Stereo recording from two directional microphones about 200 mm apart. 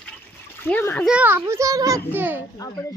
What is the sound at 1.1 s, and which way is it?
A child's voice, 10° right (ahead or behind).